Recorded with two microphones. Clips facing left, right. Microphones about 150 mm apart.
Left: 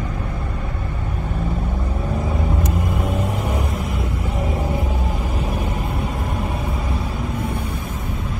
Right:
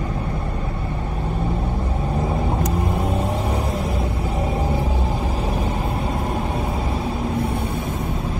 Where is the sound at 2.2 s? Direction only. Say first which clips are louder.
Right 3 dB; 30° right (ahead or behind).